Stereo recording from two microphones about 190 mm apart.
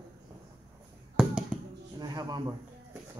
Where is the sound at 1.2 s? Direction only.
5° right (ahead or behind).